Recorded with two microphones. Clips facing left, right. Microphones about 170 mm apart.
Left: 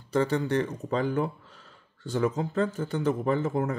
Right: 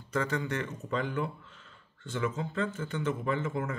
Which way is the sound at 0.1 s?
30° left (ahead or behind).